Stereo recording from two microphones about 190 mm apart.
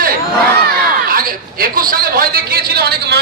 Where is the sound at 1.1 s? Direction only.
50° right (ahead or behind).